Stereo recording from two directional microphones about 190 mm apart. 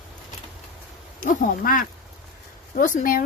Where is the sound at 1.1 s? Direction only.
45° left (ahead or behind).